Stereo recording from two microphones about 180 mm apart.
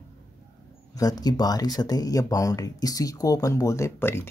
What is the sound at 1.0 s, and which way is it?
Speech, 20° left (ahead or behind).